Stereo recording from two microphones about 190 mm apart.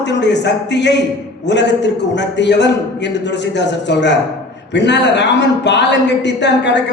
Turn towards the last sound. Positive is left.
turn(degrees=65)  # may be behind; listen again after turning